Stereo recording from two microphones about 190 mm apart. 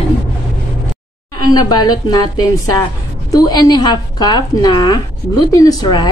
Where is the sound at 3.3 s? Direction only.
20° left (ahead or behind).